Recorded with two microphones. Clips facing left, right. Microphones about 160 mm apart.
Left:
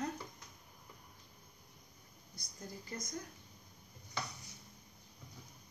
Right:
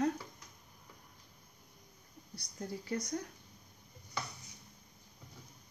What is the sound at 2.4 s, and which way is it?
Speech, 65° right (ahead or behind).